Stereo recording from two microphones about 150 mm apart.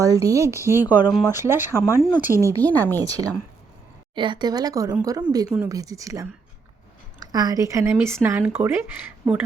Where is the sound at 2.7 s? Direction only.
10° left (ahead or behind).